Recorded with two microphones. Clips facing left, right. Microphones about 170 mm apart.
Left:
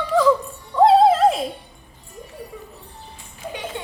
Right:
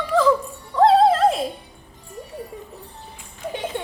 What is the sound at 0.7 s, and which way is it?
Music, centre (ahead or behind).